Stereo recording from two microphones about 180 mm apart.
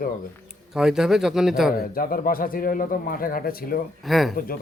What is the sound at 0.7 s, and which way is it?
Speech, 5° right (ahead or behind).